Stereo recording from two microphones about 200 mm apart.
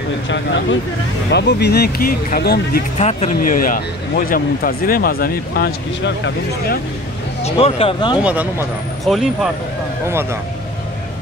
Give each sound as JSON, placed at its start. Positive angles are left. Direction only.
{"t": 0.3, "sound": "speech", "side_deg": 65}
{"t": 3.0, "sound": "speech", "side_deg": 35}
{"t": 7.4, "sound": "speech", "side_deg": 30}
{"t": 8.2, "sound": "speech", "side_deg": -5}